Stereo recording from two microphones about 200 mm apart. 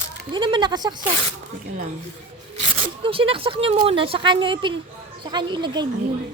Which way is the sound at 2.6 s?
25° right (ahead or behind).